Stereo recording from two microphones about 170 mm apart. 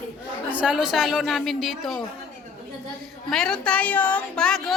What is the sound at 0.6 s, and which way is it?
A woman's voice, 5° right (ahead or behind).